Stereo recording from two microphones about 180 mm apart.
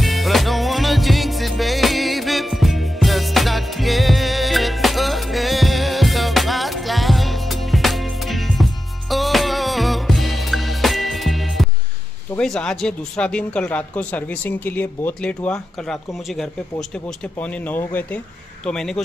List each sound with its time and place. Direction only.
0.0 s music: centre (ahead or behind)
12.4 s speech: 5° left (ahead or behind)